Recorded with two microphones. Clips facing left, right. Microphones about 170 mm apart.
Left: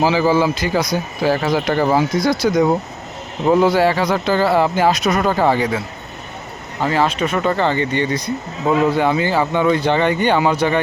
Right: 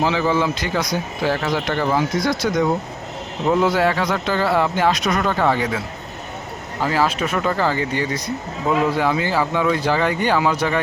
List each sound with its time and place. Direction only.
0.0 s speech: 5° left (ahead or behind)
6.8 s speech: 5° right (ahead or behind)